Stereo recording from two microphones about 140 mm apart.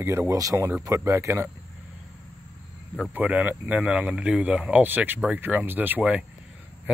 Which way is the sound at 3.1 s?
10° right (ahead or behind).